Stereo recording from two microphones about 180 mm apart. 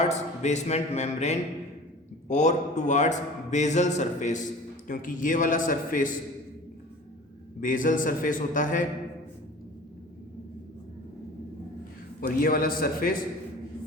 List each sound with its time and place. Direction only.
0.0 s a man's voice: 40° left (ahead or behind)
7.6 s a man's voice: 45° left (ahead or behind)
12.2 s a man's voice: 55° left (ahead or behind)